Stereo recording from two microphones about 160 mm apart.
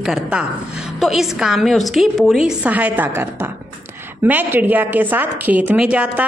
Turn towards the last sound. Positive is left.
turn(degrees=-5)  # may be behind; listen again after turning